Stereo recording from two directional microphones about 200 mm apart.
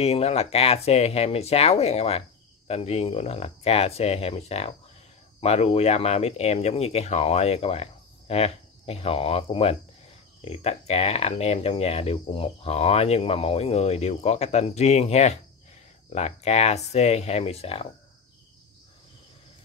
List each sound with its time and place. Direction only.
0.0 s speech: 30° left (ahead or behind)